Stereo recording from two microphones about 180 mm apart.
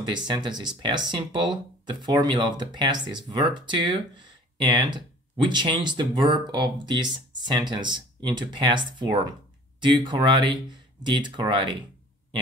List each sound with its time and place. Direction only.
0.1 s speech: 25° right (ahead or behind)